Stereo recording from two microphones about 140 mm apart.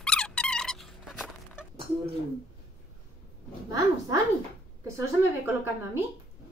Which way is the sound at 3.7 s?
25° right (ahead or behind).